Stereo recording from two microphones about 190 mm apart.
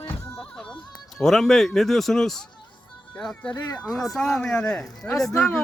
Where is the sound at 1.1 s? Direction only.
Centre (ahead or behind).